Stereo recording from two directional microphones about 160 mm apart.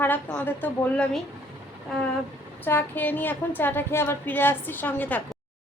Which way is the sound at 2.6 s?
10° left (ahead or behind).